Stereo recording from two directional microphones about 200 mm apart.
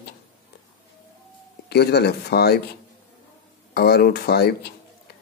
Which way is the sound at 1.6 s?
55° left (ahead or behind).